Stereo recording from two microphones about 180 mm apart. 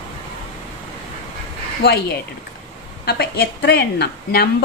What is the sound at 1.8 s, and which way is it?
A woman's voice, 60° left (ahead or behind).